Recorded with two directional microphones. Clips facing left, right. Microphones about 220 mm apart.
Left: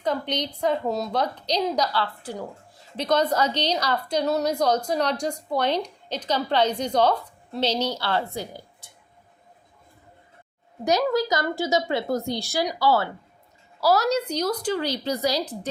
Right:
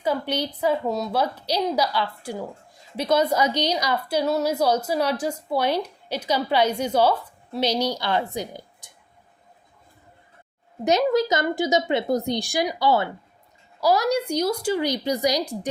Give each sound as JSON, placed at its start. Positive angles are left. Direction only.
{"t": 0.0, "sound": "a woman's voice", "side_deg": -10}
{"t": 10.8, "sound": "a woman's voice", "side_deg": -20}